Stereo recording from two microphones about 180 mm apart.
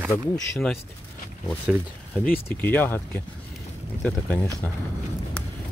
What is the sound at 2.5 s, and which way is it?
Speech, 10° left (ahead or behind).